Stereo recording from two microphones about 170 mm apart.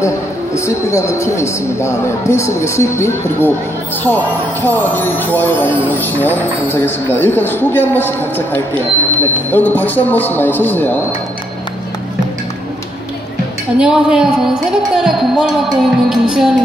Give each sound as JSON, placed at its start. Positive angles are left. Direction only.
{"t": 0.6, "sound": "speech", "side_deg": 15}
{"t": 4.6, "sound": "speech", "side_deg": 10}
{"t": 13.7, "sound": "a woman's voice", "side_deg": -5}